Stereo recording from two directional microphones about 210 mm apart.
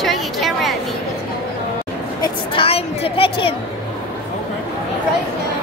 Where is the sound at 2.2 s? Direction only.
25° left (ahead or behind).